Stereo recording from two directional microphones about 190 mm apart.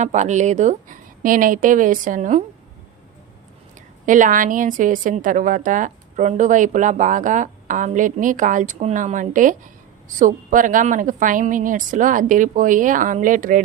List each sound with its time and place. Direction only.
0.0 s a woman's voice: 40° right (ahead or behind)
4.0 s a woman's voice: 45° right (ahead or behind)